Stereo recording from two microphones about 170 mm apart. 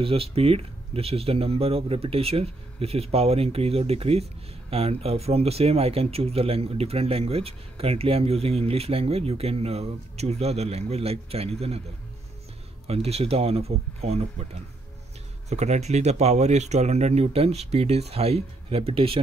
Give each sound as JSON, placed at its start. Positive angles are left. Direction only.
{"t": 0.0, "sound": "speech", "side_deg": -35}
{"t": 12.8, "sound": "speech", "side_deg": -35}